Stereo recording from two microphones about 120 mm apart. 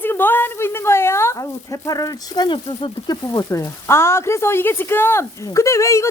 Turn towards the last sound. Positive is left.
turn(degrees=25)  # may be behind; listen again after turning